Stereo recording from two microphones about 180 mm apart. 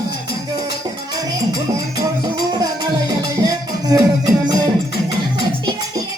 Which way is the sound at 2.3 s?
25° right (ahead or behind).